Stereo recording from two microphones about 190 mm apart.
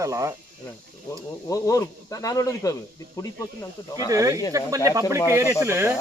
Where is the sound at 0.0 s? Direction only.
15° right (ahead or behind).